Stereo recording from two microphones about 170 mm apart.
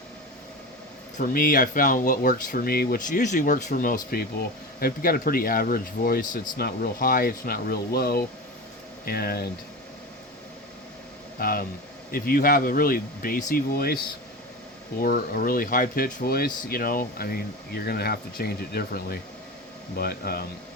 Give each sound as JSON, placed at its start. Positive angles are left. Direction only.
{"t": 1.2, "sound": "speech", "side_deg": 55}
{"t": 11.3, "sound": "speech", "side_deg": 60}